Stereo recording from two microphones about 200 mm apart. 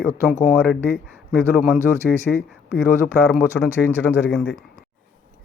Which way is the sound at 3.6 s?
5° left (ahead or behind).